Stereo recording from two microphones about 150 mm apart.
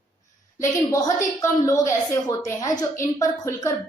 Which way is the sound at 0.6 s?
20° left (ahead or behind).